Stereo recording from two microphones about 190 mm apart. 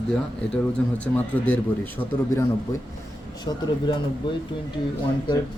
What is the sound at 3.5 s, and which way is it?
Speech, 25° left (ahead or behind).